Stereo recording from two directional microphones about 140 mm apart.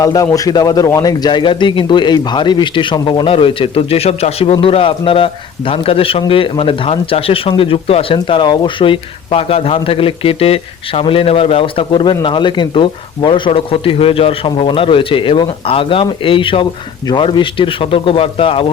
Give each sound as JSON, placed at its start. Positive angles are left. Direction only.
{"t": 0.0, "sound": "a man's voice", "side_deg": 25}